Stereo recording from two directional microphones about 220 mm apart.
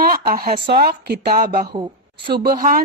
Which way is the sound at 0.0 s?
40° right (ahead or behind).